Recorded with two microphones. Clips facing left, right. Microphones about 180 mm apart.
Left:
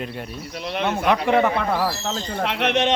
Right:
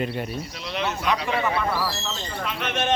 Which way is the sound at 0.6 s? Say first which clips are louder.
Left 6 dB; 55° left (ahead or behind).